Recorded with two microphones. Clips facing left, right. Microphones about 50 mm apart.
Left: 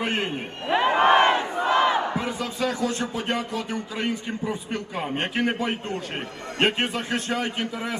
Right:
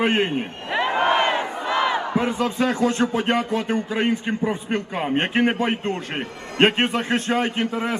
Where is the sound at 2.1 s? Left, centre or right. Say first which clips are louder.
Right 6 dB; right.